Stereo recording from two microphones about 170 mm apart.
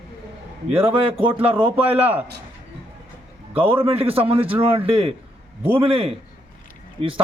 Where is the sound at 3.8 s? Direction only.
35° right (ahead or behind).